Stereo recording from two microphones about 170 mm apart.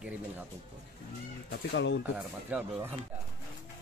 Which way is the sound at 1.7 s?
90° left.